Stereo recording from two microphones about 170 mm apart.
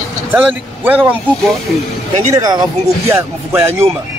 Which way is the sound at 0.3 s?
10° right (ahead or behind).